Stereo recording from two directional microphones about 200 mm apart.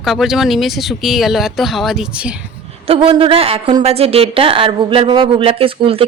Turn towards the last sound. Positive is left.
turn(degrees=-25)  # may be behind; listen again after turning